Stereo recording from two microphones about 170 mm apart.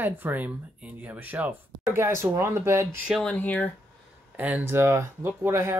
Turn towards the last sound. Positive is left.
turn(degrees=-15)  # may be behind; listen again after turning